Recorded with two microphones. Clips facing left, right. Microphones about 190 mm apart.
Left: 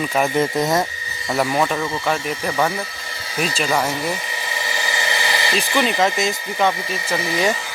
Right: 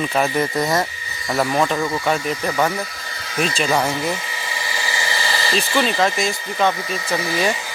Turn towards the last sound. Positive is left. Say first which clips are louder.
# even
turn(degrees=20)  # may be behind; listen again after turning